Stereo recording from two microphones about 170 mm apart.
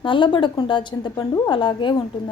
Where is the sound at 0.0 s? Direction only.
30° left (ahead or behind).